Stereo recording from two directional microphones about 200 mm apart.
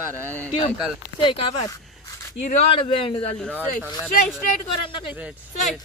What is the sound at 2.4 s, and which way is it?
Speech, 40° left (ahead or behind).